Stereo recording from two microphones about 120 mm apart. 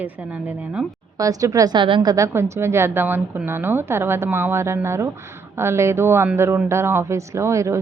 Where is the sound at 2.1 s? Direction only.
25° right (ahead or behind).